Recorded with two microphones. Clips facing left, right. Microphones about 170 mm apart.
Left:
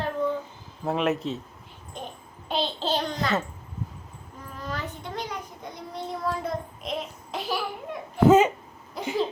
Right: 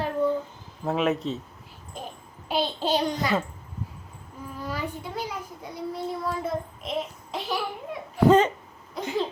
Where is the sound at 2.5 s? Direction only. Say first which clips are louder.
Right 2 dB; 10° right (ahead or behind).